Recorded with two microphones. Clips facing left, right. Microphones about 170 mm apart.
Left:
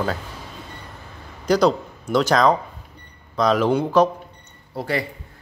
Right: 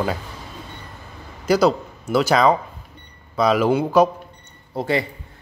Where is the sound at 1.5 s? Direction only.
5° right (ahead or behind).